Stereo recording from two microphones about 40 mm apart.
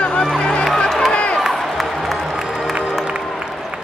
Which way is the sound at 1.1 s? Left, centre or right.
Left.